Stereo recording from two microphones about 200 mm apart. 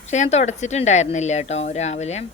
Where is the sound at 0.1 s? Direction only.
35° left (ahead or behind).